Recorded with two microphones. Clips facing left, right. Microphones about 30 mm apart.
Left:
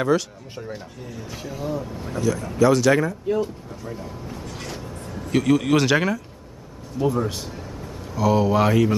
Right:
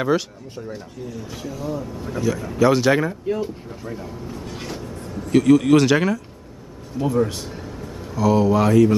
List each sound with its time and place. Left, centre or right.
0.6 s speech: centre
2.1 s speech: centre
2.6 s speech: right
3.3 s speech: centre